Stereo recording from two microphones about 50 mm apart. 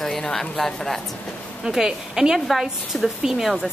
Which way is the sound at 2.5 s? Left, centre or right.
Centre.